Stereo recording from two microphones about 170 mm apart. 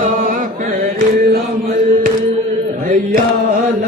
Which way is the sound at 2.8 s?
55° right (ahead or behind).